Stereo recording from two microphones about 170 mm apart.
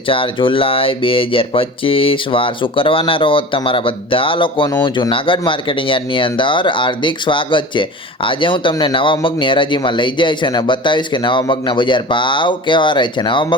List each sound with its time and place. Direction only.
0.1 s speech: 30° left (ahead or behind)